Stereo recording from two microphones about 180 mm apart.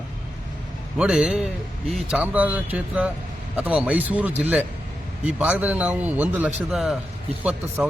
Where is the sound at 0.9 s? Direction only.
5° right (ahead or behind).